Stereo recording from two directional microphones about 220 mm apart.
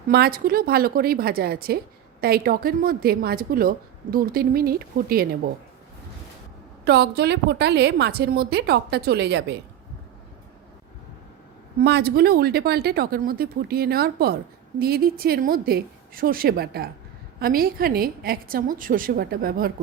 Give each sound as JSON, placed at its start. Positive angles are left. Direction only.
{"t": 0.1, "sound": "a woman's voice", "side_deg": -45}
{"t": 6.8, "sound": "a woman's voice", "side_deg": -50}
{"t": 11.8, "sound": "a woman's voice", "side_deg": -45}